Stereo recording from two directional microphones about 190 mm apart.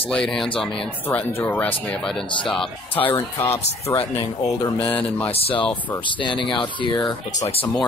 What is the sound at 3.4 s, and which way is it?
Speech, 10° left (ahead or behind).